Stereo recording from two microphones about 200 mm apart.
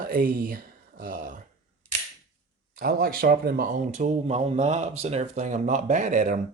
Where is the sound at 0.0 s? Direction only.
45° right (ahead or behind).